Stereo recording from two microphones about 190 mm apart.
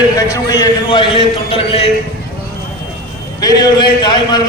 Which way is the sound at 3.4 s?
20° left (ahead or behind).